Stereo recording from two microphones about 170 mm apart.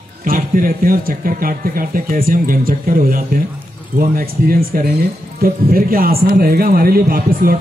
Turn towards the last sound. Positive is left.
turn(degrees=-60)  # may be behind; listen again after turning